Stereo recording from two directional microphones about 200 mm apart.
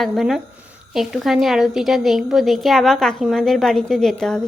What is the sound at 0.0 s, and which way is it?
A woman's voice, centre (ahead or behind).